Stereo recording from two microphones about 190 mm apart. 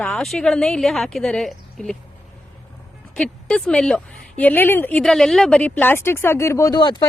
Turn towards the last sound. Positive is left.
turn(degrees=25)  # may be behind; listen again after turning